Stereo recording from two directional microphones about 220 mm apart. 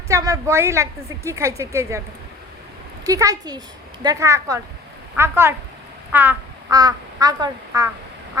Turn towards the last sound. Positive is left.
turn(degrees=-15)  # may be behind; listen again after turning